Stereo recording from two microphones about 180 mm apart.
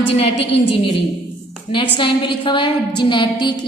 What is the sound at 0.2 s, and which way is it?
A woman's voice, 35° left (ahead or behind).